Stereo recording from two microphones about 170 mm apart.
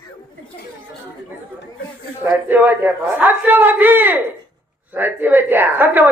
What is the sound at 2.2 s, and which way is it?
A man's voice, 10° right (ahead or behind).